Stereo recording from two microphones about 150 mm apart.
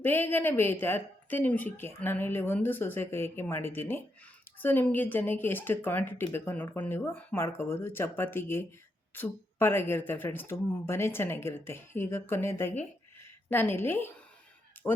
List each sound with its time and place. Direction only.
0.0 s speech: 15° left (ahead or behind)